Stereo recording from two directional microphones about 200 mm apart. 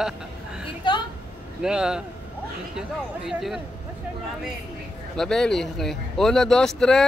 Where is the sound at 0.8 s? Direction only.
25° left (ahead or behind).